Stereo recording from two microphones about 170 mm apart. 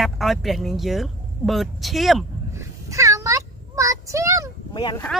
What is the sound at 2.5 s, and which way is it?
Child singing, 15° right (ahead or behind).